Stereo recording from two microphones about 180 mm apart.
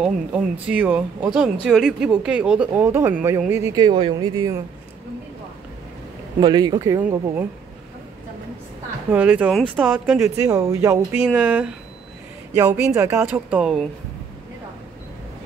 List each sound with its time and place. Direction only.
0.0 s speech: 5° right (ahead or behind)
6.4 s speech: 25° right (ahead or behind)
9.1 s speech: 10° right (ahead or behind)